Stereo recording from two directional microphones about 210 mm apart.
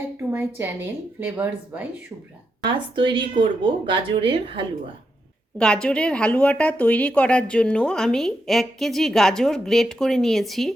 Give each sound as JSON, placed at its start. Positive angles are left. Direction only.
{"t": 0.3, "sound": "speech", "side_deg": -10}
{"t": 2.6, "sound": "speech", "side_deg": -25}
{"t": 5.5, "sound": "speech", "side_deg": 5}